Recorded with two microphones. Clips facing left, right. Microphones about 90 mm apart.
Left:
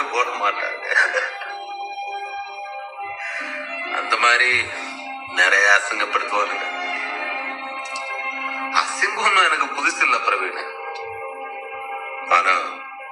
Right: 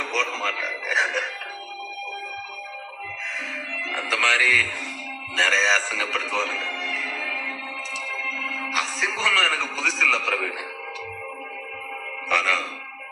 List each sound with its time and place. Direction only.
0.0 s music: 20° left (ahead or behind)
3.9 s a man's voice: 15° left (ahead or behind)
8.7 s a man's voice: 15° left (ahead or behind)
12.3 s speech: 20° left (ahead or behind)